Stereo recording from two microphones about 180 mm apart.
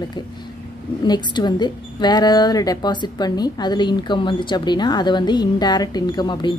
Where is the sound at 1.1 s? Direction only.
25° left (ahead or behind).